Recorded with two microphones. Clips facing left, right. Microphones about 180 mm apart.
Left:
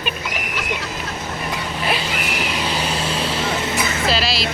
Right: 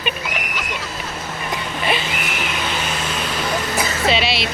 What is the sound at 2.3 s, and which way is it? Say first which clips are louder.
Vehicle: left 2 dB; 35° left (ahead or behind).